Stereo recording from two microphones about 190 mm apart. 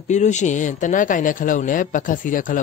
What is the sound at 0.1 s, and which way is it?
Speech, 40° left (ahead or behind).